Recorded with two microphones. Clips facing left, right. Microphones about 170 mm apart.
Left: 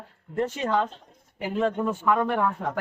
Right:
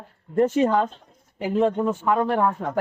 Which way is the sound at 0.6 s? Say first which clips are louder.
Right 4 dB; 35° right (ahead or behind).